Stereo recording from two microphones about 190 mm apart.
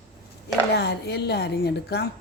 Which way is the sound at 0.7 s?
60° left (ahead or behind).